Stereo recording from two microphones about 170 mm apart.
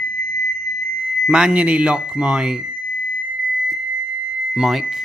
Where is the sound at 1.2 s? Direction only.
5° right (ahead or behind).